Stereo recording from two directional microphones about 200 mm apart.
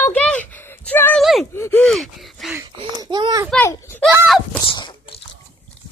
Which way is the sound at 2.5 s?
20° right (ahead or behind).